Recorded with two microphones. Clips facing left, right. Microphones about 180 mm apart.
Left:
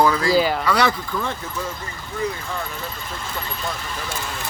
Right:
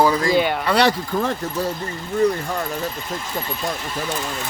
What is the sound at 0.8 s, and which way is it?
Speech, 40° right (ahead or behind).